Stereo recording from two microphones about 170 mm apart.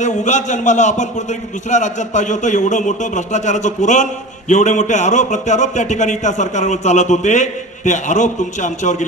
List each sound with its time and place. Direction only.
0.0 s a man's voice: 45° left (ahead or behind)